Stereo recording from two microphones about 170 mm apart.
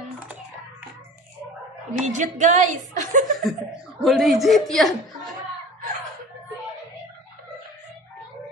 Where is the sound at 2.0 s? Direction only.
45° right (ahead or behind).